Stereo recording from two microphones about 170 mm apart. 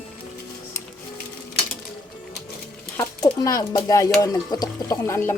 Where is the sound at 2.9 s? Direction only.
15° left (ahead or behind).